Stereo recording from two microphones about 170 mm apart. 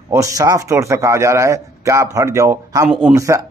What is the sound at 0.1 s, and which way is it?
A man's voice, 20° right (ahead or behind).